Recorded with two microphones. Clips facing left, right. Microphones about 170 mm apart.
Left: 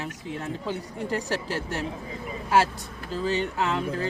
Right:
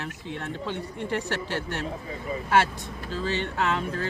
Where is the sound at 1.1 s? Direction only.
35° left (ahead or behind).